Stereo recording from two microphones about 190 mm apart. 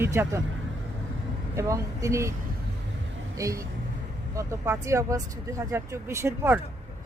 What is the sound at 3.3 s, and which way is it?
Speech, 15° right (ahead or behind).